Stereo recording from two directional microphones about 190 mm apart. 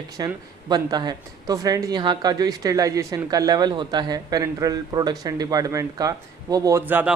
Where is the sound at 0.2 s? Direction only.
20° right (ahead or behind).